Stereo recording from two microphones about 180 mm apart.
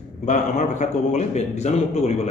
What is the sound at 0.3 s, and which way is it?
A man's voice, 40° left (ahead or behind).